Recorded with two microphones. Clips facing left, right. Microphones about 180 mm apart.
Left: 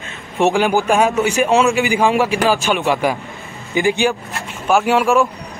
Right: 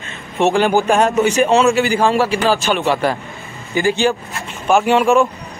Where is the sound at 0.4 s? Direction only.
10° left (ahead or behind).